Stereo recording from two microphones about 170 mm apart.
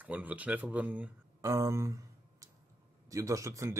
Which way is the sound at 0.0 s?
10° right (ahead or behind).